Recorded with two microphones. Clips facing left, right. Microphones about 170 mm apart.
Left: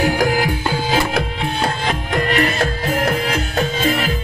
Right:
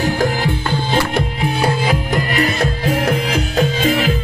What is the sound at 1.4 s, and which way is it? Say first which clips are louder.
Music: right 3 dB; 5° right (ahead or behind).